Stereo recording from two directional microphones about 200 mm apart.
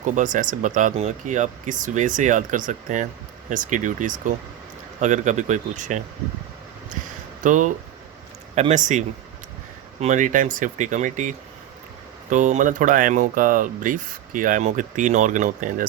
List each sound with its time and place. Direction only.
0.0 s speech: 40° right (ahead or behind)
7.4 s speech: 40° right (ahead or behind)